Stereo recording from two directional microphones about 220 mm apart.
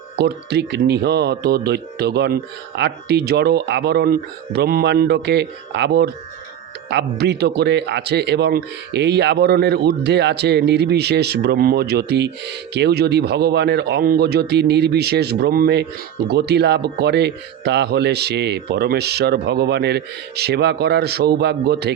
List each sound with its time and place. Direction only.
0.2 s a man's voice: 50° right (ahead or behind)